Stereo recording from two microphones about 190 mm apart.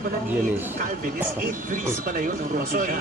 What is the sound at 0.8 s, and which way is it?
Speech, 40° right (ahead or behind).